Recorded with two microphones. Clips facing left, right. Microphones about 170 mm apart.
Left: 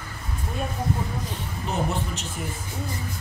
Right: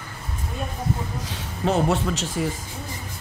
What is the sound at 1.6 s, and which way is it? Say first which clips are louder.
Speech: right 7 dB; 90° right.